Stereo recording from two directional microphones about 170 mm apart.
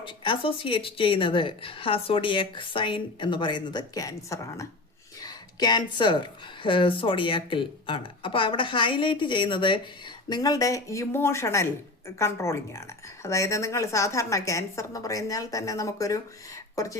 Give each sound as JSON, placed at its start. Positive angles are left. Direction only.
{"t": 0.0, "sound": "a woman's voice", "side_deg": 30}